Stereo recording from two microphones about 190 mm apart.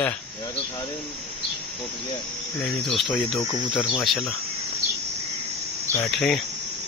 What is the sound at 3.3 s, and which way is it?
Speech, 30° left (ahead or behind).